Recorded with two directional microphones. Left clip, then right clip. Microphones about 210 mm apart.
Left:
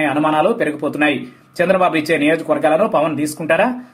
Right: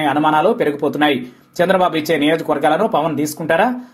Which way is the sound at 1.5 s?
25° right (ahead or behind).